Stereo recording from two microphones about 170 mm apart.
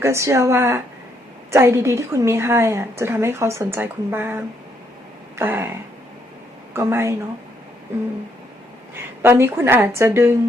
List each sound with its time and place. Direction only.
0.0 s a woman's voice: 15° right (ahead or behind)
6.7 s a woman's voice: 15° right (ahead or behind)
9.2 s a woman's voice: 15° right (ahead or behind)